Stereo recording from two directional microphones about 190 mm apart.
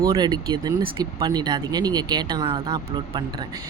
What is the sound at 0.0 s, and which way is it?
Speech, 20° right (ahead or behind).